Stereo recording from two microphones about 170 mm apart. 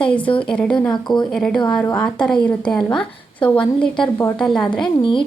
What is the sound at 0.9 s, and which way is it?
Speech, 25° left (ahead or behind).